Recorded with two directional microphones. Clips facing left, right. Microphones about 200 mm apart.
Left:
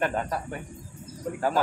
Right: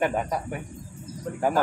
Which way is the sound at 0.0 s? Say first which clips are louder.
Right 2 dB; 10° right (ahead or behind).